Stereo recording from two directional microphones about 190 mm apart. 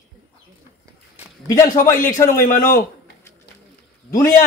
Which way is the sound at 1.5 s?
15° left (ahead or behind).